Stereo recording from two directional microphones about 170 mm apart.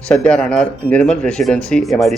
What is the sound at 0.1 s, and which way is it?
Speech, 5° left (ahead or behind).